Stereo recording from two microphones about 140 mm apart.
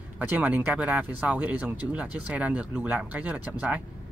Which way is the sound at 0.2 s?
10° right (ahead or behind).